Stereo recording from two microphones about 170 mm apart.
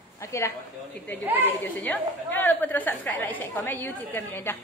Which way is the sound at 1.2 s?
10° right (ahead or behind).